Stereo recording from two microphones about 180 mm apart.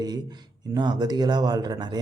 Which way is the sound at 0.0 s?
20° right (ahead or behind).